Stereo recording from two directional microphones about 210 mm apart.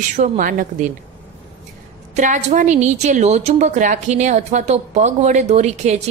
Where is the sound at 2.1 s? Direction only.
35° right (ahead or behind).